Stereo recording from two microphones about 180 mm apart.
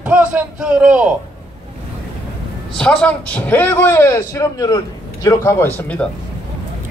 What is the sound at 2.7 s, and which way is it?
A man's voice, 5° left (ahead or behind).